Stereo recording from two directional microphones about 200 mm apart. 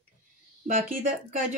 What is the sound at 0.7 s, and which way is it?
Speech, 40° right (ahead or behind).